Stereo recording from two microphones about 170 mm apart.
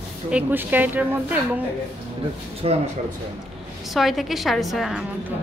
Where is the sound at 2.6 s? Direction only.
35° right (ahead or behind).